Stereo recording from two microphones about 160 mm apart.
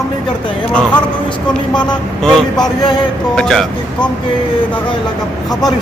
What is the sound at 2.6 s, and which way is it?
Speech, 25° left (ahead or behind).